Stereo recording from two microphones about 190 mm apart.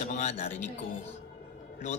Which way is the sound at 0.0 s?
40° left (ahead or behind).